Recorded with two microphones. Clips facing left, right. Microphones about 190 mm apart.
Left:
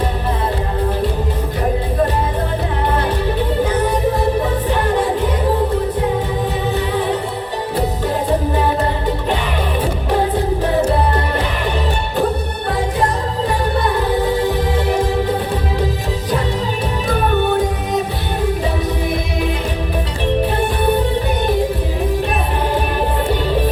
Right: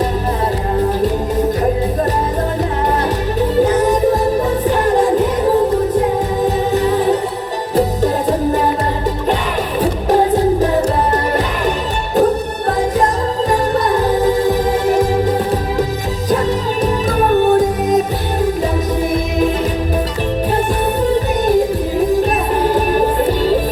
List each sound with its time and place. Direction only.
6.7 s music: 45° right (ahead or behind)
13.5 s music: 45° right (ahead or behind)
17.1 s music: 40° right (ahead or behind)